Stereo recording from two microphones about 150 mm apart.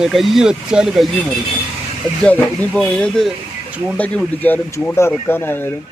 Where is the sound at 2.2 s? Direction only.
10° left (ahead or behind).